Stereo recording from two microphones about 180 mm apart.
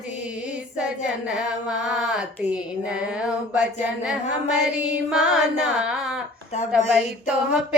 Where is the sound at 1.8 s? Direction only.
5° right (ahead or behind).